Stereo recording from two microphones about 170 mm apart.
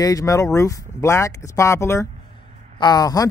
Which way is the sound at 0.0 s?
20° left (ahead or behind).